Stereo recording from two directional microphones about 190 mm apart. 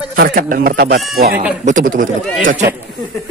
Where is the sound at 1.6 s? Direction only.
40° right (ahead or behind).